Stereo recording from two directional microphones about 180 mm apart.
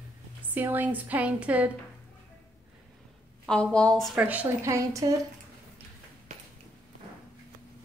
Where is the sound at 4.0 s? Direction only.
5° right (ahead or behind).